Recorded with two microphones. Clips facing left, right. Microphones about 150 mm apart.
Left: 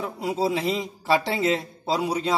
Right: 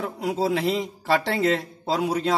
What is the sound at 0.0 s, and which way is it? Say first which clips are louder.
A man's voice: even; 5° left (ahead or behind).